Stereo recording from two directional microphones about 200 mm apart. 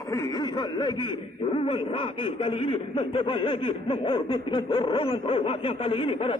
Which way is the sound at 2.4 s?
25° left (ahead or behind).